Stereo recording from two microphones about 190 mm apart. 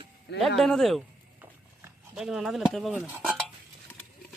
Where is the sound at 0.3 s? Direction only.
Centre (ahead or behind).